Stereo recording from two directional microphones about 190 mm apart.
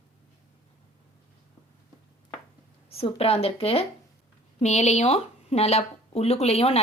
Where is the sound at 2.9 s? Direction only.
30° left (ahead or behind).